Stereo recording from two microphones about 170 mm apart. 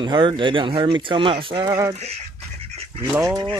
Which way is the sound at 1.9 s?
35° right (ahead or behind).